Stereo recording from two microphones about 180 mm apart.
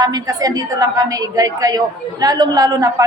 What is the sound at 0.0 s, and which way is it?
A woman's voice, 20° right (ahead or behind).